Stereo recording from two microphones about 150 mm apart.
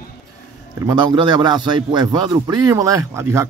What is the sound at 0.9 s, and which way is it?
A man's voice, 30° right (ahead or behind).